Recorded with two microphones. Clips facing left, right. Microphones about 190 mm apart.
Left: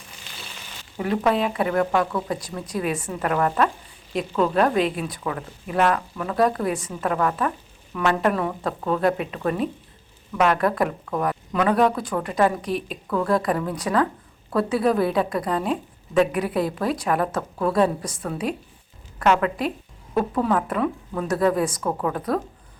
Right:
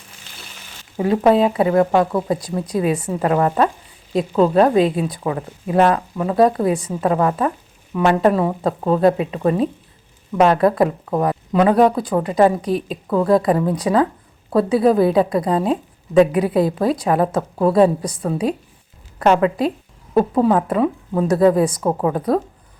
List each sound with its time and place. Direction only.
0.9 s a woman's voice: 30° right (ahead or behind)